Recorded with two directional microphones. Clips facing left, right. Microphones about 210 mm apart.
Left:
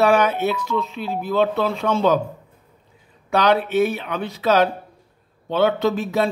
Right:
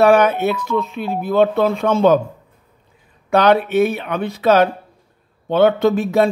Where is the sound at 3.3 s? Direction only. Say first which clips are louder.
Right 4 dB; 55° right (ahead or behind).